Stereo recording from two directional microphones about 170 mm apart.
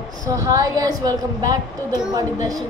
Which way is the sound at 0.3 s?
20° right (ahead or behind).